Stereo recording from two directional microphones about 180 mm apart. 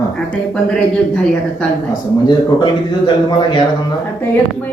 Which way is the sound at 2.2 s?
25° left (ahead or behind).